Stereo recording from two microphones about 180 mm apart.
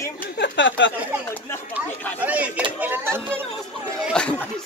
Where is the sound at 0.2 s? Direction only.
75° left (ahead or behind).